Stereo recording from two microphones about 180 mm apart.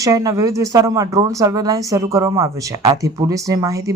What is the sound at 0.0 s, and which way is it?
A woman's voice, 20° right (ahead or behind).